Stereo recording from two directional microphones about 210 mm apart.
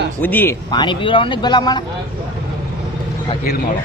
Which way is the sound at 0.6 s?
20° left (ahead or behind).